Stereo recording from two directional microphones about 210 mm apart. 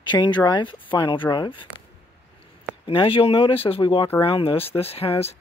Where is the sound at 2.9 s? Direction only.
25° left (ahead or behind).